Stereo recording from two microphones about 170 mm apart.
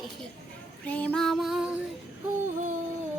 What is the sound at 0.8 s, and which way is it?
Music, 10° left (ahead or behind).